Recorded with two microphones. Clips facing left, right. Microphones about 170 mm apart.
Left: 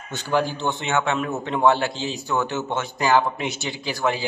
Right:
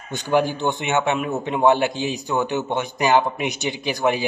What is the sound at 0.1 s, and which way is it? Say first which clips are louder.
A man's voice: right 3 dB; 15° right (ahead or behind).